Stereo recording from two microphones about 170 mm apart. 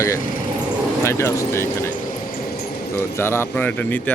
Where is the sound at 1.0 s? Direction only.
15° left (ahead or behind).